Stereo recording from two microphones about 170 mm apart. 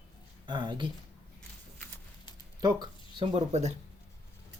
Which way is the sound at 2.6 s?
25° right (ahead or behind).